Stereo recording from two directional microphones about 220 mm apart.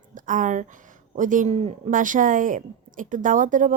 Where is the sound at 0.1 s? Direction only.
35° right (ahead or behind).